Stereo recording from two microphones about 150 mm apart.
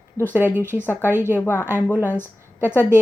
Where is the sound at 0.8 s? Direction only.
15° left (ahead or behind).